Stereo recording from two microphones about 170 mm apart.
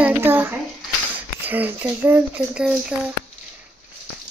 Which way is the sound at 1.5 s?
10° right (ahead or behind).